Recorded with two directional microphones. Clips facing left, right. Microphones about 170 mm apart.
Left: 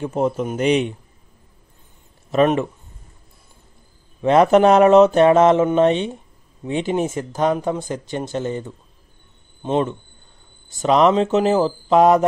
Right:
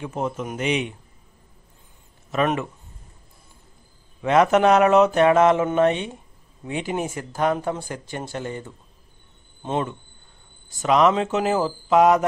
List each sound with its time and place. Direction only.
0.0 s a man's voice: 35° left (ahead or behind)
2.3 s speech: 25° left (ahead or behind)
4.2 s a man's voice: 30° left (ahead or behind)